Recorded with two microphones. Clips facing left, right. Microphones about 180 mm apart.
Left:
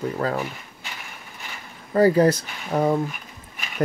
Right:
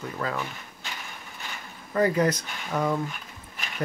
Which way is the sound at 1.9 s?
35° left (ahead or behind).